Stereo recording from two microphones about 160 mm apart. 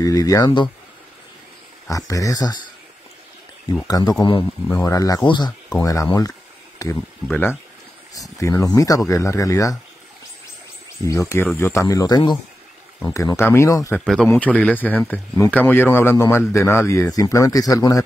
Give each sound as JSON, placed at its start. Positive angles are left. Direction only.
{"t": 0.0, "sound": "speech", "side_deg": 20}
{"t": 1.9, "sound": "speech", "side_deg": 20}
{"t": 3.8, "sound": "speech", "side_deg": 25}
{"t": 8.1, "sound": "speech", "side_deg": 20}
{"t": 11.1, "sound": "speech", "side_deg": 15}
{"t": 13.9, "sound": "speech", "side_deg": 0}